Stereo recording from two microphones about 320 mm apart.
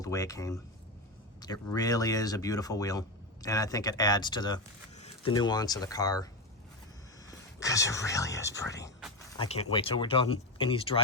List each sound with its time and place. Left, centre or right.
0.0 s speech: centre
7.3 s speech: centre